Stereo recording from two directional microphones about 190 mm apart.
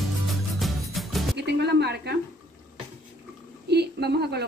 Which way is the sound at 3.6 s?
60° right (ahead or behind).